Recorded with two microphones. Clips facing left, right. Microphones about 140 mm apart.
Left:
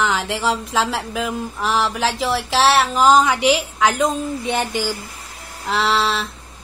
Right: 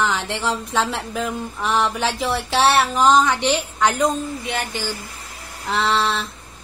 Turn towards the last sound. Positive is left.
turn(degrees=0)  # may be behind; listen again after turning